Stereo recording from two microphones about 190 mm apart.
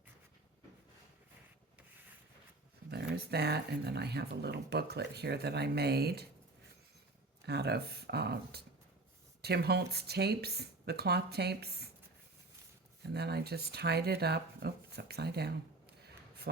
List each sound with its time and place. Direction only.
3.2 s speech: 55° right (ahead or behind)
7.4 s speech: 60° right (ahead or behind)
13.0 s speech: 60° right (ahead or behind)